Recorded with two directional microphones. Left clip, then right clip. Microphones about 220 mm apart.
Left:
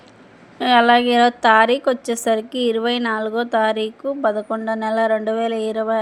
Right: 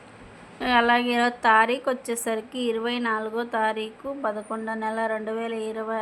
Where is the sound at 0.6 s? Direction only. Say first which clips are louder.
Left 7 dB; 20° left (ahead or behind).